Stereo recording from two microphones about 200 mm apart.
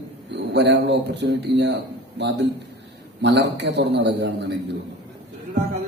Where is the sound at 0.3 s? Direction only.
60° right (ahead or behind).